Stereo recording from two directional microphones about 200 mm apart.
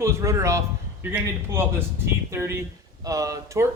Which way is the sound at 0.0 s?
15° right (ahead or behind).